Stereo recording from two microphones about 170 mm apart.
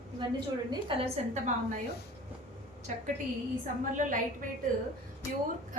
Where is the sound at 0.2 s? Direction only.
25° right (ahead or behind).